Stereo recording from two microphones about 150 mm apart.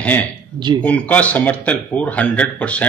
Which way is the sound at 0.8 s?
10° left (ahead or behind).